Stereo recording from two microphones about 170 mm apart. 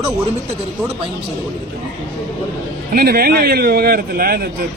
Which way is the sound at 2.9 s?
60° right (ahead or behind).